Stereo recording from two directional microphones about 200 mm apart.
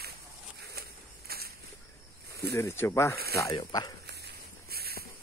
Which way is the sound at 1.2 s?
50° right (ahead or behind).